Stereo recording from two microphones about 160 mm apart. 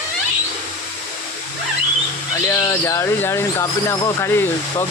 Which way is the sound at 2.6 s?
15° left (ahead or behind).